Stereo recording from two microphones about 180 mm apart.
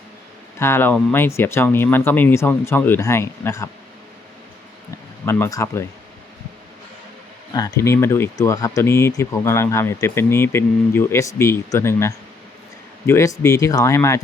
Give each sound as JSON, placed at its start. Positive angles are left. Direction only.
{"t": 0.6, "sound": "speech", "side_deg": 10}
{"t": 5.2, "sound": "speech", "side_deg": 15}
{"t": 7.5, "sound": "speech", "side_deg": 20}